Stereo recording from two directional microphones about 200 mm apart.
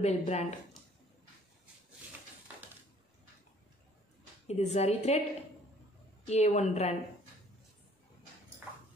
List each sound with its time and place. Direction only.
0.0 s a woman's voice: 35° left (ahead or behind)
4.5 s a woman's voice: 30° left (ahead or behind)
6.2 s a woman's voice: 35° left (ahead or behind)